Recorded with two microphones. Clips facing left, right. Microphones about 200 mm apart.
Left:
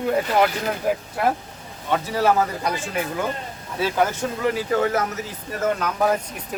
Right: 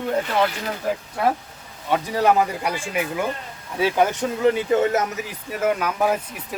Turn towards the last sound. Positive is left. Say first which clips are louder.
# even
turn(degrees=-10)  # may be behind; listen again after turning